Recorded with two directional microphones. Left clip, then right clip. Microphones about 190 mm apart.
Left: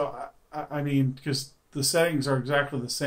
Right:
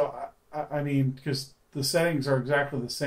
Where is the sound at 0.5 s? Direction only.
15° left (ahead or behind).